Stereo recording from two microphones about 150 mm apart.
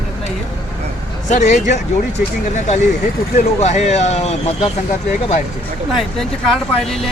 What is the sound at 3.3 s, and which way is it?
Speech, 50° left (ahead or behind).